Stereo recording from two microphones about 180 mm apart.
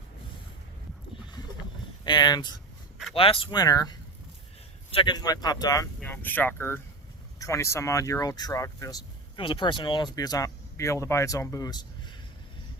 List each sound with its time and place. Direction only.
2.0 s speech: 25° left (ahead or behind)
6.0 s speech: 10° left (ahead or behind)